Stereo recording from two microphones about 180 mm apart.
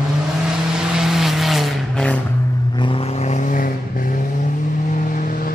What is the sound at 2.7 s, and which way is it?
Vehicle, 30° left (ahead or behind).